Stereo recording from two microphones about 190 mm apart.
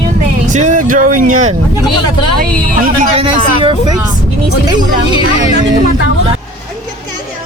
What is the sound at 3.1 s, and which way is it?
Speech, 30° right (ahead or behind).